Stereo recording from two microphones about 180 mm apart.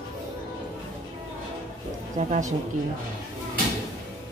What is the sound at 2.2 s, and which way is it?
Speech, 45° right (ahead or behind).